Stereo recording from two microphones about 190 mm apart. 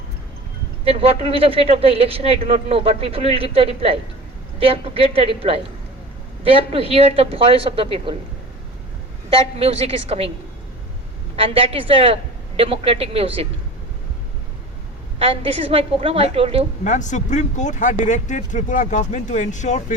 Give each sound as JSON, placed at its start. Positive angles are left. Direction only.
{"t": 0.9, "sound": "a man's voice", "side_deg": -30}
{"t": 9.3, "sound": "a man's voice", "side_deg": -30}
{"t": 11.3, "sound": "a woman's voice", "side_deg": -30}
{"t": 15.2, "sound": "a man's voice", "side_deg": -30}
{"t": 16.8, "sound": "speech", "side_deg": 40}